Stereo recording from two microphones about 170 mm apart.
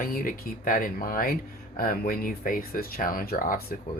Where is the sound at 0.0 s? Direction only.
55° left (ahead or behind).